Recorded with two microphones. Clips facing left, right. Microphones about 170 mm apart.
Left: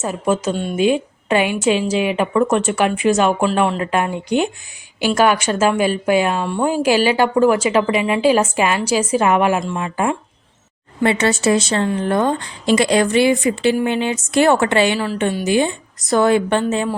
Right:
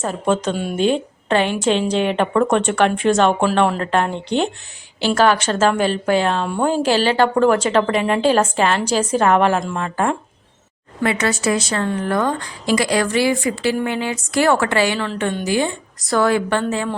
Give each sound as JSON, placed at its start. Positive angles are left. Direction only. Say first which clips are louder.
{"t": 0.0, "sound": "a woman's voice", "louder": "even", "side_deg": 5}
{"t": 0.5, "sound": "speech", "louder": "left 1 dB", "side_deg": -5}
{"t": 0.8, "sound": "a woman's voice", "louder": "left 2 dB", "side_deg": 5}
{"t": 11.0, "sound": "a woman's voice", "louder": "left 3 dB", "side_deg": 30}
{"t": 14.9, "sound": "a woman's voice", "louder": "left 2 dB", "side_deg": 10}
{"t": 15.4, "sound": "a woman's voice", "louder": "left 3 dB", "side_deg": 20}